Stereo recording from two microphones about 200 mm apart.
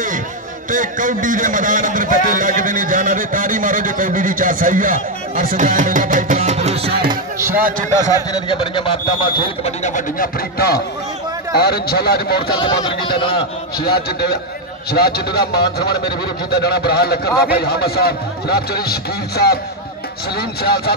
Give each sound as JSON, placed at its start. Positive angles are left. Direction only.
{"t": 0.7, "sound": "a man's voice", "side_deg": -40}
{"t": 7.3, "sound": "speech", "side_deg": -10}
{"t": 8.3, "sound": "speech", "side_deg": 25}
{"t": 9.8, "sound": "a man's voice", "side_deg": 40}
{"t": 12.5, "sound": "speech", "side_deg": 25}
{"t": 13.8, "sound": "a man's voice", "side_deg": 50}